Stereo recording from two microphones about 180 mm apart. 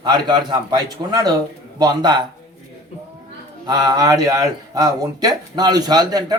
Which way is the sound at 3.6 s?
20° right (ahead or behind).